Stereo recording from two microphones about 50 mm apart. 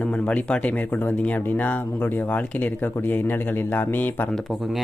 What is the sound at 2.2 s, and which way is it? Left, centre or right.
Speech, left.